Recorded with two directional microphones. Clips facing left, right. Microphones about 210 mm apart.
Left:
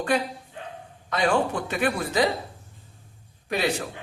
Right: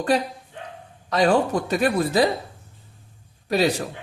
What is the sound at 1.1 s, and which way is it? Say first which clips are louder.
A man's voice: right 4 dB; 35° right (ahead or behind).